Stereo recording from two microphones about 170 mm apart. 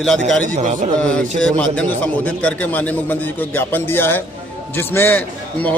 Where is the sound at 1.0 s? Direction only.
5° left (ahead or behind).